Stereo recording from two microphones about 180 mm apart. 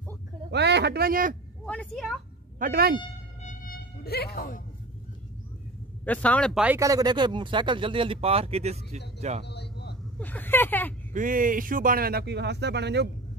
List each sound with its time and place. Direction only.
0.5 s a man's voice: 70° right (ahead or behind); by 1.3 s 55° right (ahead or behind)
1.7 s a woman's voice: 5° left (ahead or behind)
2.6 s speech: 55° right (ahead or behind)
3.4 s mosquito: 55° left (ahead or behind)
6.0 s speech: 10° left (ahead or behind)
6.5 s speech: 5° right (ahead or behind)
6.8 s speech: 20° right (ahead or behind); by 9.0 s 35° right (ahead or behind)
9.4 s a sound: 70° left (ahead or behind)
10.1 s speech: 10° left (ahead or behind)
11.1 s speech: 50° right (ahead or behind); by 13.1 s 70° right (ahead or behind)